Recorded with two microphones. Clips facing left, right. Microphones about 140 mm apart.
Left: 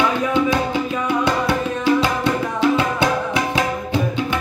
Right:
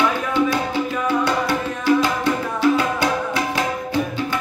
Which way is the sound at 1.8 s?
20° left (ahead or behind).